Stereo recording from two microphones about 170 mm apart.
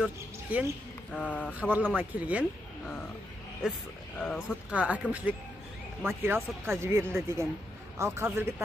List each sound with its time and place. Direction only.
0.5 s speech: 10° right (ahead or behind)
1.1 s speech: 10° left (ahead or behind)
1.5 s speech: 10° right (ahead or behind)
3.6 s a man's voice: 5° right (ahead or behind)
4.2 s speech: 10° left (ahead or behind)
4.6 s speech: 10° right (ahead or behind)
6.0 s speech: 15° right (ahead or behind)